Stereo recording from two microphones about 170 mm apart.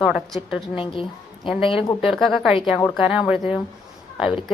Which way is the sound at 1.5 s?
30° left (ahead or behind).